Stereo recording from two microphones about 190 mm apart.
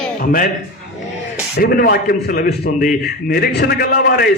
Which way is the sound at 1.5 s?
55° left (ahead or behind).